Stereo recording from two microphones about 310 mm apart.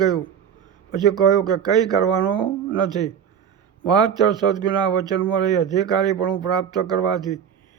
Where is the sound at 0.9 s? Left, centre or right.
Centre.